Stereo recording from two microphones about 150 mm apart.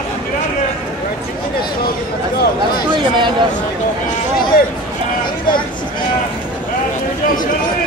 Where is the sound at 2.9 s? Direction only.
30° right (ahead or behind).